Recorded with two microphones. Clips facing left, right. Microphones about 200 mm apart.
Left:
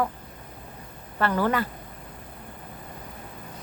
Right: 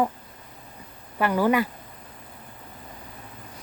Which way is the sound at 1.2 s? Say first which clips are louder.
Right 3 dB; 10° right (ahead or behind).